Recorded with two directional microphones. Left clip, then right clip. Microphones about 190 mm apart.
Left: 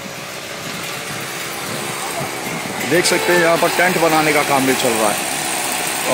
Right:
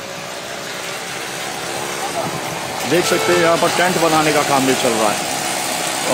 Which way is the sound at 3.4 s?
Centre (ahead or behind).